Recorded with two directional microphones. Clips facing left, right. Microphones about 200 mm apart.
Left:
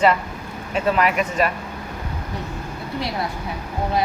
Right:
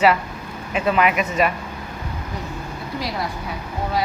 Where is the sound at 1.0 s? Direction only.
35° left (ahead or behind).